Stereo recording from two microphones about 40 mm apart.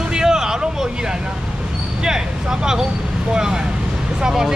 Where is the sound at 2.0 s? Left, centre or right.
Centre.